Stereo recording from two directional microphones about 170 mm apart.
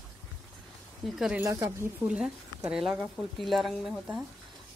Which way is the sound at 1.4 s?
20° right (ahead or behind).